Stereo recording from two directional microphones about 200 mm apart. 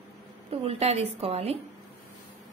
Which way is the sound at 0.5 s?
30° right (ahead or behind).